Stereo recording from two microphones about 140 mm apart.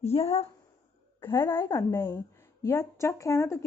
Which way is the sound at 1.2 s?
15° left (ahead or behind).